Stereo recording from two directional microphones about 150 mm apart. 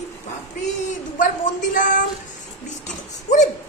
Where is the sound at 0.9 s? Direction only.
60° left (ahead or behind).